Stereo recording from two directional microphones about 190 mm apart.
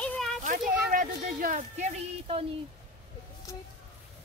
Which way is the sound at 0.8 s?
45° right (ahead or behind).